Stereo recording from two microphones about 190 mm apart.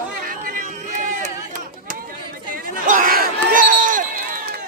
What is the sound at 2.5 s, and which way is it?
Crowd, 45° right (ahead or behind).